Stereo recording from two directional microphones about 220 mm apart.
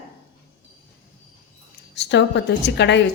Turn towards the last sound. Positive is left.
turn(degrees=50)  # may be behind; listen again after turning